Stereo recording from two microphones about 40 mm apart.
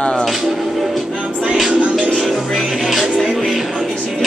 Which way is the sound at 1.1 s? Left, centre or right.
Right.